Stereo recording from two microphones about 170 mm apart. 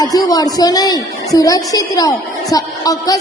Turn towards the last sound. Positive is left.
turn(degrees=20)  # may be behind; listen again after turning